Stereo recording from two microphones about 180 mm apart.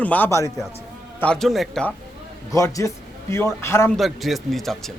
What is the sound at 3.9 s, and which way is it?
Speech, centre (ahead or behind).